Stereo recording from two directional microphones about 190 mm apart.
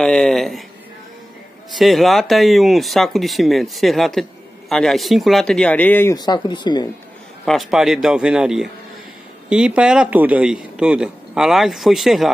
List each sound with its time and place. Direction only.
0.0 s speech: 5° left (ahead or behind)
1.7 s speech: centre (ahead or behind)
6.1 s speech: 20° left (ahead or behind)
7.4 s speech: centre (ahead or behind)